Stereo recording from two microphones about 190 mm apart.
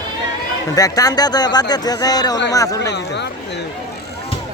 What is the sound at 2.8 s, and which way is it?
Speech, 65° left (ahead or behind).